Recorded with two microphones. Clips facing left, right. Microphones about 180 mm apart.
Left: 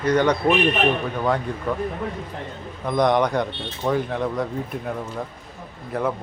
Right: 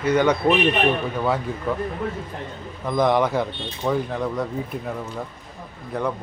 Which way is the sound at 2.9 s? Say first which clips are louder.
Even; centre (ahead or behind).